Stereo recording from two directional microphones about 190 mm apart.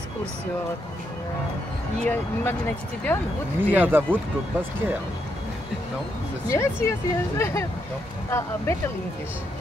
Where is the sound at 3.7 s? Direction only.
10° right (ahead or behind).